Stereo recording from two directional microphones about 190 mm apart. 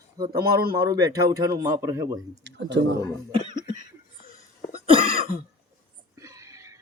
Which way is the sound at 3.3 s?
25° right (ahead or behind).